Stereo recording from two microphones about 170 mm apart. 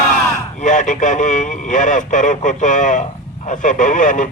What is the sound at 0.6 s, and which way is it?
Speech, 45° left (ahead or behind).